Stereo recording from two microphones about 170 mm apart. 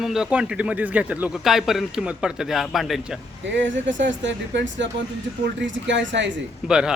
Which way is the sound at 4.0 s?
90° right.